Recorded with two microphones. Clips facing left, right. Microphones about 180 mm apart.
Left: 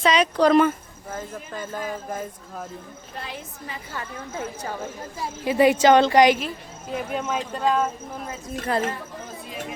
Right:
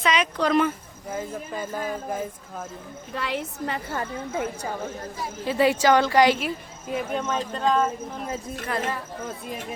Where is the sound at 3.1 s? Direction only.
75° right (ahead or behind).